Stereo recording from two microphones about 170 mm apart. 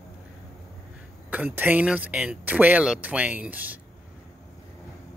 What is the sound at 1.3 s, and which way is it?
Speech, 10° right (ahead or behind).